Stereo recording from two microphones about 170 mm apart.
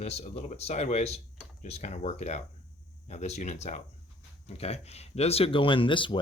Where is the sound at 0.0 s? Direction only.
40° left (ahead or behind).